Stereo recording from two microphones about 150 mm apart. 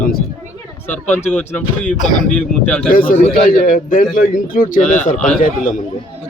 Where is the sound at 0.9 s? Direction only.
10° left (ahead or behind).